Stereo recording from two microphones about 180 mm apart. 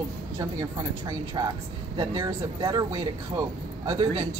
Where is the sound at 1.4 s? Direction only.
20° right (ahead or behind).